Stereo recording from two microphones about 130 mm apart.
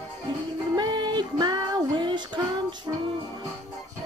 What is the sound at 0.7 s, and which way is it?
Music, 35° right (ahead or behind).